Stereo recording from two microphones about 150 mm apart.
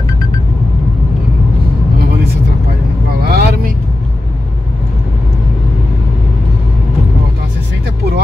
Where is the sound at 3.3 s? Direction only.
90° right.